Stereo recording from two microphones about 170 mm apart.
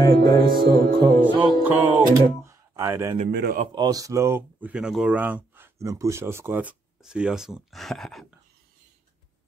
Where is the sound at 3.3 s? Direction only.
70° right (ahead or behind).